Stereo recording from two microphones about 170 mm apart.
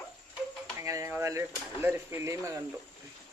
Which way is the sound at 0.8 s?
20° right (ahead or behind).